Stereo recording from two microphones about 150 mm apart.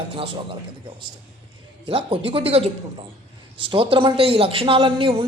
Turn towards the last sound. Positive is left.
turn(degrees=-35)  # may be behind; listen again after turning